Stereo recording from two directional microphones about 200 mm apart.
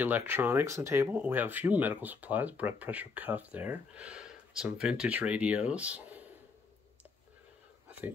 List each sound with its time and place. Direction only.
0.0 s speech: 10° right (ahead or behind)